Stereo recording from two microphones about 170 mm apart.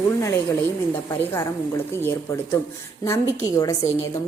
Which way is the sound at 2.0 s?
15° left (ahead or behind).